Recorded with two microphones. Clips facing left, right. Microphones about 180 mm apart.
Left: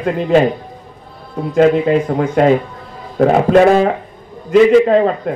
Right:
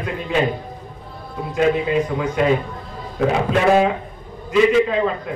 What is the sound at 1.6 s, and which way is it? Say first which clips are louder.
A man's voice: left 6 dB; 50° left (ahead or behind).